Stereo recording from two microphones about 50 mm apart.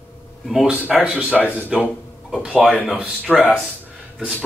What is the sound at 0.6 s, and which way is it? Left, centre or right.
Speech, right.